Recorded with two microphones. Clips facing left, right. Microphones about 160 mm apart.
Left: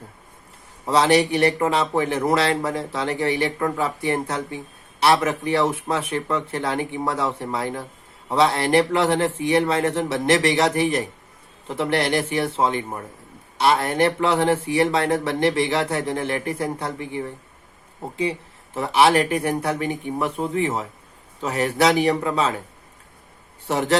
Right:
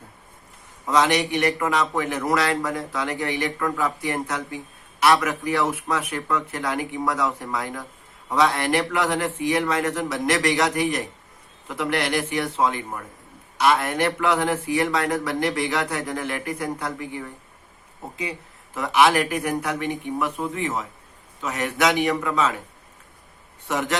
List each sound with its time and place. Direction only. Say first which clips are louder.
0.9 s speech: left 3 dB; 30° left (ahead or behind)
23.6 s speech: left 5 dB; 30° left (ahead or behind)